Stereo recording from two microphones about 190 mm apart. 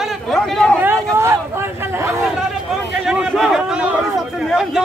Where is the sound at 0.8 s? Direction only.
15° right (ahead or behind).